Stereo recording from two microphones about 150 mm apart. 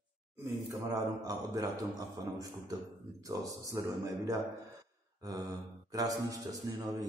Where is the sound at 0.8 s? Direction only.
25° right (ahead or behind).